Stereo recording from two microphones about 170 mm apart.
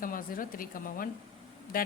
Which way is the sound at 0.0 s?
55° left (ahead or behind).